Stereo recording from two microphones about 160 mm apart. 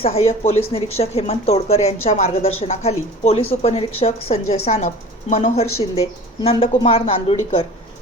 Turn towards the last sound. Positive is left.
turn(degrees=35)  # may be behind; listen again after turning